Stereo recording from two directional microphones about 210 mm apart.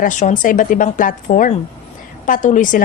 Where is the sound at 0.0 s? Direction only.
35° left (ahead or behind).